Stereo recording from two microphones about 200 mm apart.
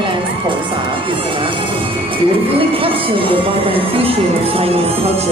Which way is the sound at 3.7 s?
30° right (ahead or behind).